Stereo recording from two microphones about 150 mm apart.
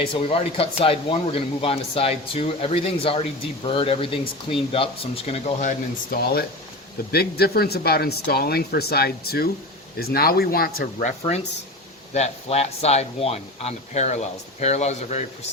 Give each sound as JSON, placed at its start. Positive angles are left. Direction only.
{"t": 0.1, "sound": "speech", "side_deg": 40}
{"t": 6.1, "sound": "speech", "side_deg": 90}
{"t": 11.0, "sound": "speech", "side_deg": 45}